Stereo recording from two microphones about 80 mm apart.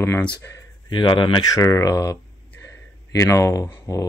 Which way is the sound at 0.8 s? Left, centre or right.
Left.